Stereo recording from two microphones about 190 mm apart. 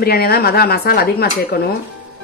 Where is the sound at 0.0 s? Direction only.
55° left (ahead or behind).